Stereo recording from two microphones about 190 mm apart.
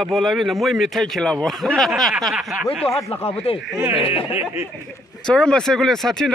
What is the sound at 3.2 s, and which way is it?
Speech, 35° left (ahead or behind).